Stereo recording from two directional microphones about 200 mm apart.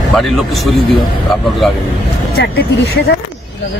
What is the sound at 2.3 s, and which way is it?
Speech, 50° left (ahead or behind).